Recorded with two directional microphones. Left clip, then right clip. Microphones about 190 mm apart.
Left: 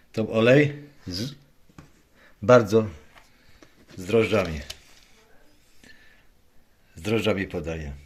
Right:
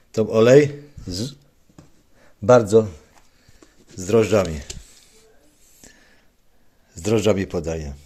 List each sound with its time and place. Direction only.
0.1 s a man's voice: 30° right (ahead or behind)
3.9 s speech: 30° right (ahead or behind)
5.8 s whispering: 30° right (ahead or behind)
6.9 s speech: 30° right (ahead or behind)